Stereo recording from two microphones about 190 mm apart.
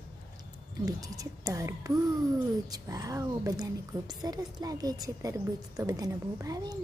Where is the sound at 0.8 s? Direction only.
20° right (ahead or behind).